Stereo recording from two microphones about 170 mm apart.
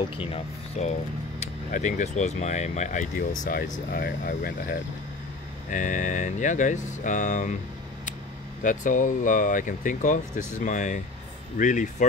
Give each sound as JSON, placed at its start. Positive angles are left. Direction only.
{"t": 0.1, "sound": "speech", "side_deg": 35}
{"t": 5.7, "sound": "speech", "side_deg": 50}
{"t": 8.6, "sound": "speech", "side_deg": 50}